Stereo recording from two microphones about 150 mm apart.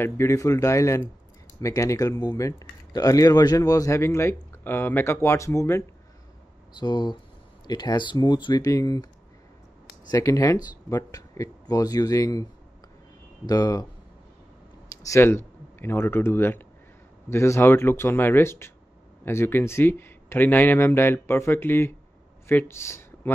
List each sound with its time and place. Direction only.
0.0 s speech: 20° left (ahead or behind)
6.8 s speech: 30° left (ahead or behind)
10.0 s speech: 20° left (ahead or behind)
13.5 s speech: 25° left (ahead or behind)
15.0 s speech: 20° left (ahead or behind)